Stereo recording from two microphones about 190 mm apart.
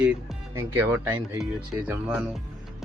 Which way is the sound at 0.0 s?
5° right (ahead or behind).